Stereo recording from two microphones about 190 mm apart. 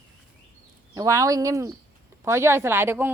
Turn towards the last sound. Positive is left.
turn(degrees=-10)  # may be behind; listen again after turning